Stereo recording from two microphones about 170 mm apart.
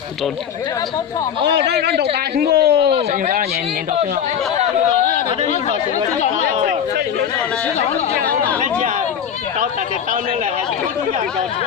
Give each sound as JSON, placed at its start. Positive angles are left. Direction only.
{"t": 1.5, "sound": "a man's voice", "side_deg": -80}
{"t": 2.9, "sound": "speech", "side_deg": -45}